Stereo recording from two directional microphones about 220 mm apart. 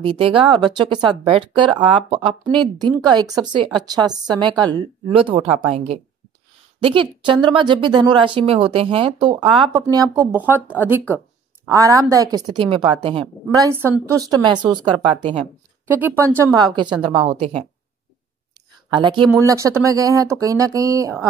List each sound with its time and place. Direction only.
0.0 s speech: 25° right (ahead or behind)
15.9 s speech: 10° right (ahead or behind); by 17.6 s 30° right (ahead or behind)
18.9 s speech: 20° right (ahead or behind)